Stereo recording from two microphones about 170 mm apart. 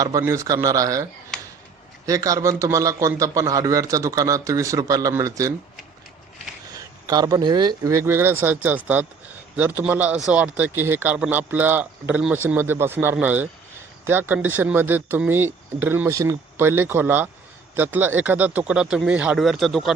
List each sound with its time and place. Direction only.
0.0 s a man's voice: 20° right (ahead or behind)
2.0 s a man's voice: 20° right (ahead or behind)
6.7 s speech: 20° right (ahead or behind); by 19.9 s centre (ahead or behind)